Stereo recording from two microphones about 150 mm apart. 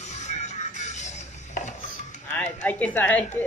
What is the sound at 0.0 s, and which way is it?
Music, 50° left (ahead or behind).